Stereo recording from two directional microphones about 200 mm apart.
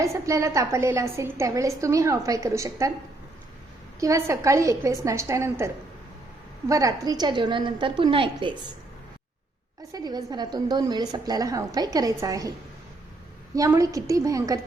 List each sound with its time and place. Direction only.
0.0 s a woman's voice: 15° right (ahead or behind)
4.0 s a woman's voice: 15° right (ahead or behind)
9.9 s a woman's voice: 20° right (ahead or behind)
13.6 s a woman's voice: 15° right (ahead or behind)